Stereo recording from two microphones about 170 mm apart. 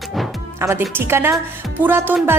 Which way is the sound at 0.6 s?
15° right (ahead or behind).